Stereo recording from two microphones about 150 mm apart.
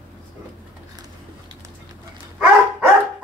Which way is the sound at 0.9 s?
25° right (ahead or behind).